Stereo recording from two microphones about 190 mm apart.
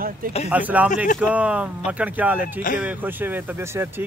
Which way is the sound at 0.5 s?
10° right (ahead or behind).